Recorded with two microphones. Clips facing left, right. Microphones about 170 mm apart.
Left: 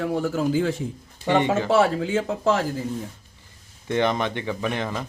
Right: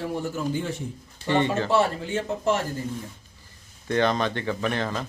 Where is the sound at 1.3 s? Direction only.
15° left (ahead or behind).